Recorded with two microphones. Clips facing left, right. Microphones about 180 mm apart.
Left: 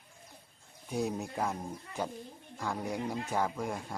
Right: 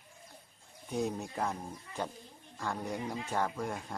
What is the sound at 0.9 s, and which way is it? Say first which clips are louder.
Speech: left 1 dB; 5° left (ahead or behind).